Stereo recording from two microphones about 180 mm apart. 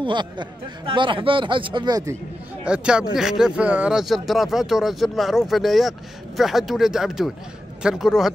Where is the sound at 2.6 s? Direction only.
5° right (ahead or behind).